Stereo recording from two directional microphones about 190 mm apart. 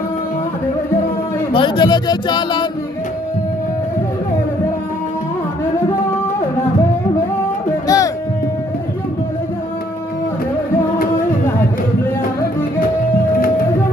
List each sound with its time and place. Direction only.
1.5 s speech: 25° left (ahead or behind)
7.8 s music: 20° left (ahead or behind)